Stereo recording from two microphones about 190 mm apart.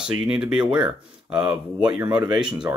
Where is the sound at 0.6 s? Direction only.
25° right (ahead or behind).